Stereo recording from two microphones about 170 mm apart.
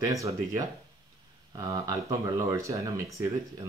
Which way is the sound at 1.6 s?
20° right (ahead or behind).